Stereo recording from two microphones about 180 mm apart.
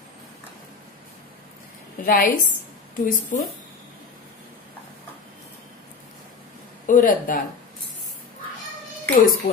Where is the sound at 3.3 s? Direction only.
45° left (ahead or behind).